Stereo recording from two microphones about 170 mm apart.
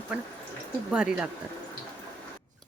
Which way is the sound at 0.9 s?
5° right (ahead or behind).